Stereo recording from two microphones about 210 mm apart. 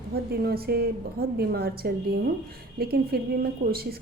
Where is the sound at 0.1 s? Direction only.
50° right (ahead or behind).